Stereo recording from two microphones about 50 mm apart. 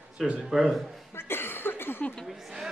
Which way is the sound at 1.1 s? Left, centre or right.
Left.